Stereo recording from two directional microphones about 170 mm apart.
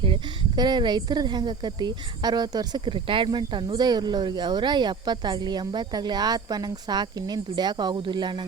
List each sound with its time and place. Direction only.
0.0 s speech: 25° right (ahead or behind)